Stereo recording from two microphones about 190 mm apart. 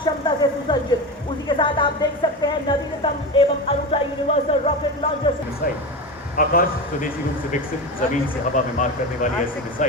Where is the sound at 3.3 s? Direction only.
30° left (ahead or behind).